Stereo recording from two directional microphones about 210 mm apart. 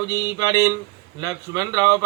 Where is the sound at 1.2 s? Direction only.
15° right (ahead or behind).